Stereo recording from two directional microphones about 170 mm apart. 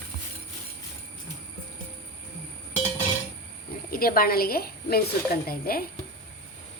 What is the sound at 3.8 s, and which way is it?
A woman's voice, 60° left (ahead or behind).